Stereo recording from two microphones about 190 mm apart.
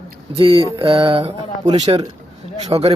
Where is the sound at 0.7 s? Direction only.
30° right (ahead or behind).